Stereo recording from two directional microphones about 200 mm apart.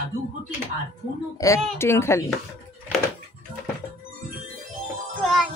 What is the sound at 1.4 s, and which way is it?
Speech, 15° left (ahead or behind).